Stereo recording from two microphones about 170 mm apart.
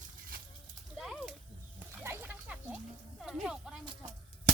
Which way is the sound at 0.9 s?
Centre (ahead or behind).